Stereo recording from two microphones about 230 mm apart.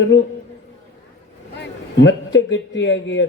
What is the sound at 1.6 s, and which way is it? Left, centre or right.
A man's voice, left.